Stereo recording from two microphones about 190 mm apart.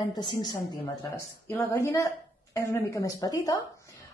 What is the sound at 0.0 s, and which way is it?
Speech, 25° left (ahead or behind).